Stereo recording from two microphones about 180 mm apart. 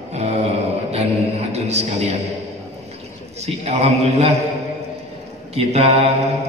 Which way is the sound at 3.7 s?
35° right (ahead or behind).